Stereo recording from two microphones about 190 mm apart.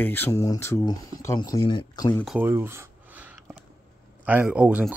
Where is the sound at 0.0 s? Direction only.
10° left (ahead or behind).